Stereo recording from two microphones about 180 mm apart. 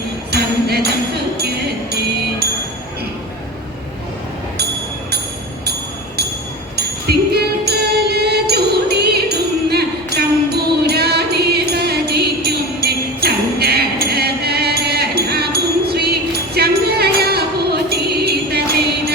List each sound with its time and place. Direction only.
0.3 s jingle bell: 60° right (ahead or behind)
6.7 s music: 65° right (ahead or behind)